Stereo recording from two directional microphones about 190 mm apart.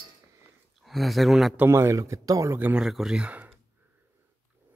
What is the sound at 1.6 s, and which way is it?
Speech, 15° right (ahead or behind).